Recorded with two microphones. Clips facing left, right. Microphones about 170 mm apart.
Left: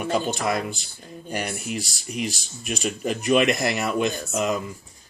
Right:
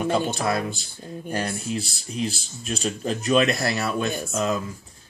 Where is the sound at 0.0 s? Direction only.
15° left (ahead or behind).